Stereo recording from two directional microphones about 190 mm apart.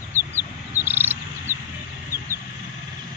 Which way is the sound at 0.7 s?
10° right (ahead or behind).